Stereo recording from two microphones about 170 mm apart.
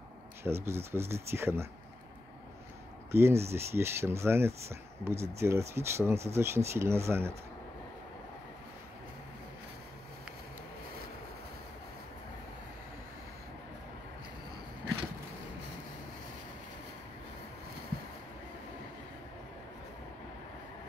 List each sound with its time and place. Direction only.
0.4 s speech: 15° right (ahead or behind)
3.1 s speech: 15° right (ahead or behind)